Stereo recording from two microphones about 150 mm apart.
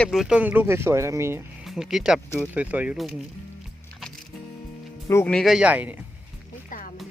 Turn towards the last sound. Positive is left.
turn(degrees=65)  # may be behind; listen again after turning